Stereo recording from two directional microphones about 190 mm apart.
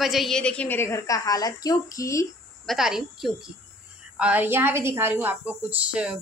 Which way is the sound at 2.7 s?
Centre (ahead or behind).